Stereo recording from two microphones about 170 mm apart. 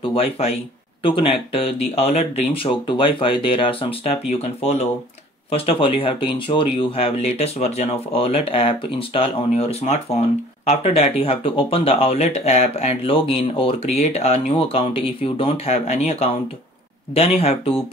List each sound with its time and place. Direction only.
0.0 s speech: 35° left (ahead or behind)